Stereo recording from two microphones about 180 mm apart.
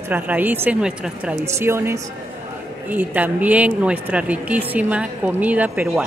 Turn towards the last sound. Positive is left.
turn(degrees=-10)  # may be behind; listen again after turning